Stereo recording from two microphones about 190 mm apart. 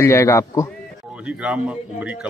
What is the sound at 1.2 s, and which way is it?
A man's voice, 5° right (ahead or behind).